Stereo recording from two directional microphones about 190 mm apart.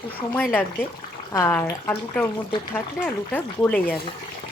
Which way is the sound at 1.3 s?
15° left (ahead or behind).